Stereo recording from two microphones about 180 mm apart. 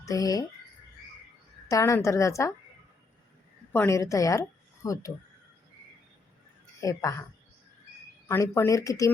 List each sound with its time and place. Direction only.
0.0 s speech: 20° left (ahead or behind)
1.7 s a woman's voice: 15° left (ahead or behind)
3.7 s a woman's voice: 15° left (ahead or behind)
6.8 s a woman's voice: 15° left (ahead or behind)
8.3 s a woman's voice: 15° left (ahead or behind)